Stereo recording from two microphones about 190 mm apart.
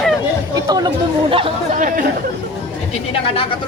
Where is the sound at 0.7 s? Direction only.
20° right (ahead or behind).